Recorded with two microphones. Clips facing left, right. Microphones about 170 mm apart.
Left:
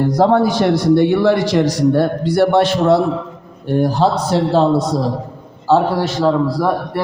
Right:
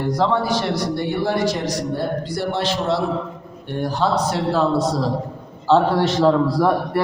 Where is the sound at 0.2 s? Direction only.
50° left (ahead or behind).